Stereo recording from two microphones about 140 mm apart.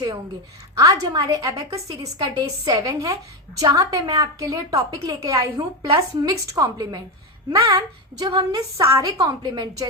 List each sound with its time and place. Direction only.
0.8 s a woman's voice: 25° right (ahead or behind)
7.6 s a woman's voice: 40° right (ahead or behind)